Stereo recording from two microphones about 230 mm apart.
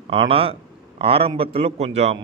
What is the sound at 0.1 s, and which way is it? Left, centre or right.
A man's voice, right.